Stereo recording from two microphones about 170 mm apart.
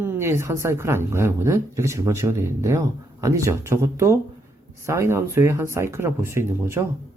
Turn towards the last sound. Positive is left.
turn(degrees=-15)  # may be behind; listen again after turning